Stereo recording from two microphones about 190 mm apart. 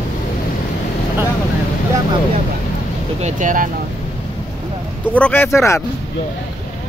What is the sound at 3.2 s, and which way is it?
Speech, 45° right (ahead or behind).